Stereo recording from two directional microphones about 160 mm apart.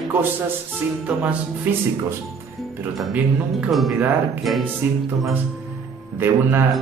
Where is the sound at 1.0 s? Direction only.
10° right (ahead or behind).